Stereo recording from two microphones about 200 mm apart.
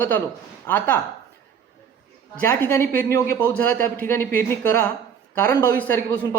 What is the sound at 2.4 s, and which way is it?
Speech, 15° left (ahead or behind).